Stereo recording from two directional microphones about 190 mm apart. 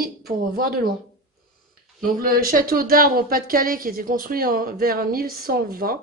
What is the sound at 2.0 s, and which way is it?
A woman's voice, 50° right (ahead or behind).